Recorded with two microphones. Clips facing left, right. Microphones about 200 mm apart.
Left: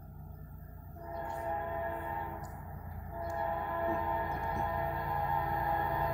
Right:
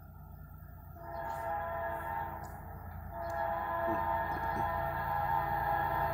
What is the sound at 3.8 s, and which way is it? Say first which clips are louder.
Music: left 1 dB; 15° left (ahead or behind).